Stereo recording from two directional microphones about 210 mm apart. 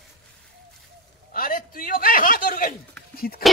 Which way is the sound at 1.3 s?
40° left (ahead or behind).